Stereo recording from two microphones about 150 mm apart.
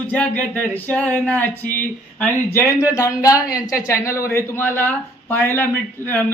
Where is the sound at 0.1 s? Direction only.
10° left (ahead or behind).